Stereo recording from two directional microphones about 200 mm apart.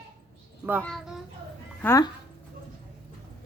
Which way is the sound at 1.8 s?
15° left (ahead or behind).